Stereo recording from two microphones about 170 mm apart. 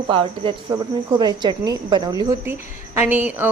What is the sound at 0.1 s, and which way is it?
A woman's voice, 30° right (ahead or behind).